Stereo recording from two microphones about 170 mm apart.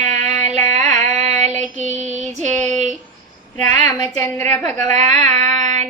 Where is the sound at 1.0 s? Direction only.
40° right (ahead or behind).